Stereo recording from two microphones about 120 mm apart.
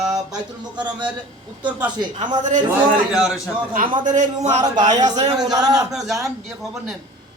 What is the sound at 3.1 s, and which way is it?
Speech, 5° right (ahead or behind).